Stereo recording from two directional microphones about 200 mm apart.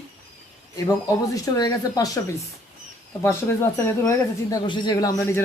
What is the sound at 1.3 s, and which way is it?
Speech, 15° left (ahead or behind).